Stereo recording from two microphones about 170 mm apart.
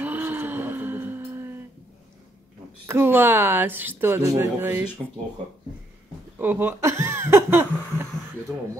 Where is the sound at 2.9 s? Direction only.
10° right (ahead or behind).